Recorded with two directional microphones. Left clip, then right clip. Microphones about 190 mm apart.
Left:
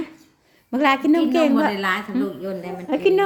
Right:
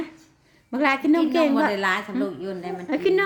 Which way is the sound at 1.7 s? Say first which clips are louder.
Left 1 dB; 25° right (ahead or behind).